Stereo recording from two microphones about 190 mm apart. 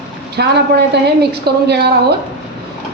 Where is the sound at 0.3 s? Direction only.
60° right (ahead or behind).